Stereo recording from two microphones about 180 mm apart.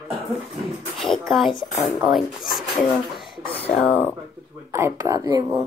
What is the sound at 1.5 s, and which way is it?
Speech, 25° left (ahead or behind).